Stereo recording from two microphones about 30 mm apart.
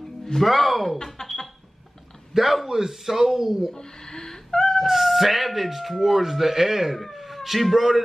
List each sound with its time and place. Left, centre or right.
0.2 s speech: centre
1.1 s a sound: centre
2.3 s a man's voice: centre
3.7 s cat: centre
4.8 s speech: centre
7.0 s speech: centre